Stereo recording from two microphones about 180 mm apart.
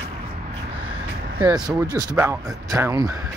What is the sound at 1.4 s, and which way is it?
Speech, 20° right (ahead or behind).